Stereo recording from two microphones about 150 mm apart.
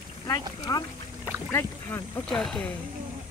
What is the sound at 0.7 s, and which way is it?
Speech, 20° left (ahead or behind).